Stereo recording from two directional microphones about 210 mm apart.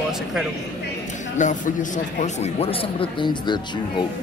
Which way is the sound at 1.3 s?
35° left (ahead or behind).